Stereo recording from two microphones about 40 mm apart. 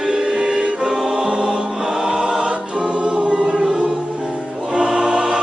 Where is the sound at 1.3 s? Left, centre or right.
Centre.